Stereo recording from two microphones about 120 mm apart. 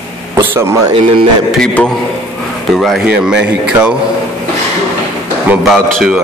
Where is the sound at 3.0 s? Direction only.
10° right (ahead or behind).